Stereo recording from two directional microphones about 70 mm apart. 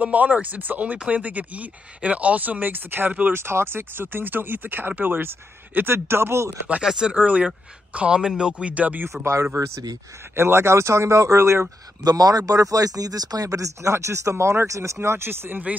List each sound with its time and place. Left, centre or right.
0.0 s speech: right
3.3 s speech: right
6.8 s speech: centre
9.2 s speech: right
12.0 s speech: right
13.9 s speech: right